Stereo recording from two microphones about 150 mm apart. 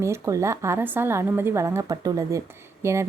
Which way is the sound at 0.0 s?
20° right (ahead or behind).